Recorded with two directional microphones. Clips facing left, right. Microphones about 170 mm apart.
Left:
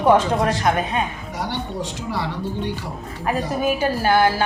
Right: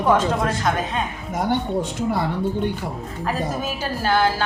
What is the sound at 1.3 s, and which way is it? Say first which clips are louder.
Speech: right 5 dB; 50° right (ahead or behind).